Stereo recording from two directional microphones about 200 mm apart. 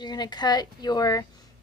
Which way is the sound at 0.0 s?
20° left (ahead or behind).